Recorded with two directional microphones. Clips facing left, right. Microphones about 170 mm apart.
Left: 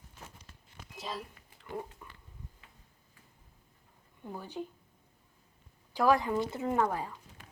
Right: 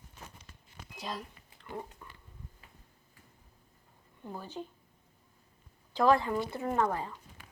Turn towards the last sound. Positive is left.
turn(degrees=10)  # may be behind; listen again after turning